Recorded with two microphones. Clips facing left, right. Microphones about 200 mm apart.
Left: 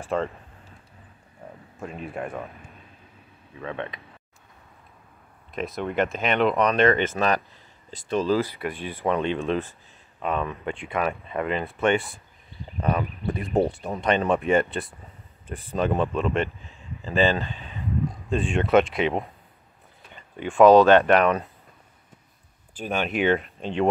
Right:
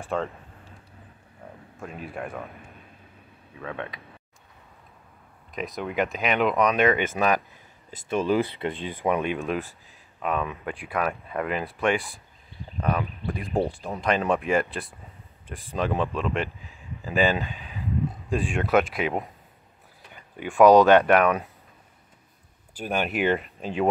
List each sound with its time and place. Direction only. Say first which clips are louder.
0.0 s a sound: left 2 dB; centre (ahead or behind)
1.8 s speech: left 2 dB; centre (ahead or behind)
3.6 s speech: left 2 dB; 5° right (ahead or behind)
5.5 s speech: left 2 dB; centre (ahead or behind)
8.5 s speech: right 1 dB; 25° right (ahead or behind)
9.0 s speech: left 1 dB; 10° right (ahead or behind)
22.8 s speech: left 1 dB; 5° right (ahead or behind)